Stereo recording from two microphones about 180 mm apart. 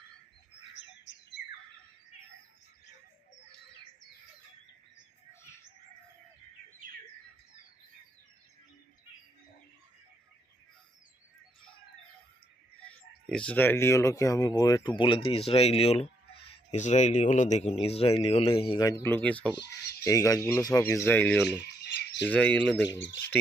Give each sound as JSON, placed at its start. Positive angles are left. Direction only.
{"t": 12.9, "sound": "speech", "side_deg": 5}
{"t": 18.8, "sound": "speech", "side_deg": 20}
{"t": 20.1, "sound": "speech", "side_deg": 20}
{"t": 22.9, "sound": "speech", "side_deg": 90}